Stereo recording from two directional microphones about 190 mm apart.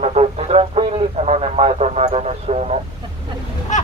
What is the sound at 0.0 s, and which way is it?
Radio, 35° right (ahead or behind).